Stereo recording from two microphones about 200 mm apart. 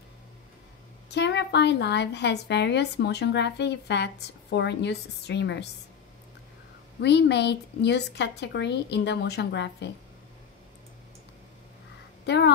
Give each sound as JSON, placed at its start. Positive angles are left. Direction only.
{"t": 1.1, "sound": "a woman's voice", "side_deg": 60}
{"t": 7.0, "sound": "a woman's voice", "side_deg": 60}
{"t": 12.3, "sound": "a woman's voice", "side_deg": 60}